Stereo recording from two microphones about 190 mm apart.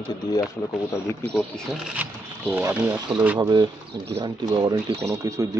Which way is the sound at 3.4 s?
25° right (ahead or behind).